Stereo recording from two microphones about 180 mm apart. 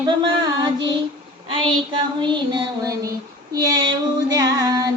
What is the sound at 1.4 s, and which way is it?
Child singing, 25° right (ahead or behind).